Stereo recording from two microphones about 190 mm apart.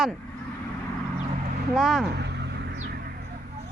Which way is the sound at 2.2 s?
65° right (ahead or behind).